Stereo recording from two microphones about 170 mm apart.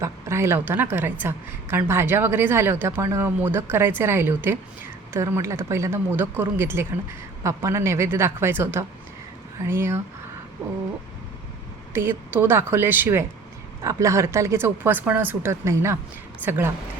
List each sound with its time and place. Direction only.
0.0 s speech: 15° right (ahead or behind)
11.9 s speech: 10° right (ahead or behind)